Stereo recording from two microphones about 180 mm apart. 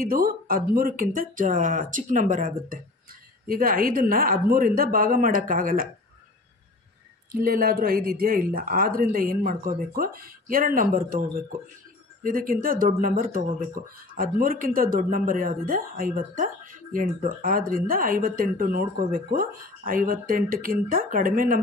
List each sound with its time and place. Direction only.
0.0 s speech: 50° right (ahead or behind)
7.3 s speech: 55° right (ahead or behind)